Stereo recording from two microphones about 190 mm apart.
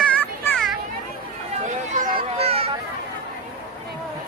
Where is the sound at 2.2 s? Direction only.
30° right (ahead or behind).